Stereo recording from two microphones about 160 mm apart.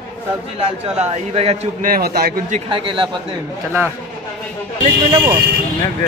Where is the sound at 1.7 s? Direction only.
65° right (ahead or behind).